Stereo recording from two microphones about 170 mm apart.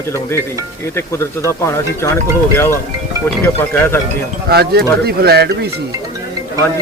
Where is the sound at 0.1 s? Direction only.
15° left (ahead or behind).